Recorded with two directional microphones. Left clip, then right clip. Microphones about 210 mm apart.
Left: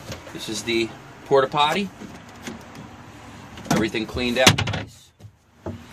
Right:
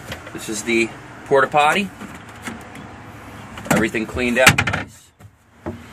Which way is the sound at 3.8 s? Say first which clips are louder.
Right 4 dB; 35° left (ahead or behind).